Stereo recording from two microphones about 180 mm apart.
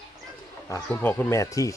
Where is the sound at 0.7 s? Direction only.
10° left (ahead or behind).